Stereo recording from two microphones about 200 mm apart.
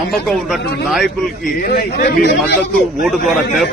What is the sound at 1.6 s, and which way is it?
Speech, 55° left (ahead or behind).